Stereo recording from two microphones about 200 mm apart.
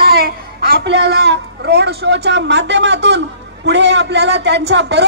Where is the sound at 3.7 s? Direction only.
60° right (ahead or behind).